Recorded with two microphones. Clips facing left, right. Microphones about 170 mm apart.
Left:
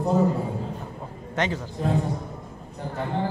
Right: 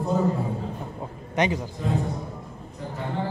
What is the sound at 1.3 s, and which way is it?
Speech, 15° right (ahead or behind).